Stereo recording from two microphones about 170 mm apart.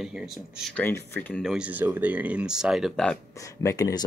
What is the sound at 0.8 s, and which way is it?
Speech, 15° left (ahead or behind).